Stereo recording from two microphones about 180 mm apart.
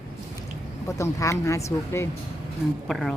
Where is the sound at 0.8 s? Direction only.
15° left (ahead or behind).